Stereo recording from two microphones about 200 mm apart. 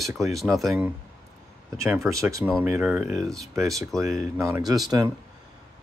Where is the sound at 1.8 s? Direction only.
15° right (ahead or behind).